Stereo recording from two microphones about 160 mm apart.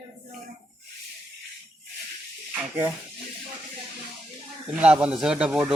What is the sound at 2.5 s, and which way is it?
Speech, 15° right (ahead or behind).